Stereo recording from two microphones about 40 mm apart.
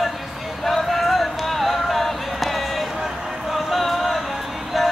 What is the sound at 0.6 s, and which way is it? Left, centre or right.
Music, centre.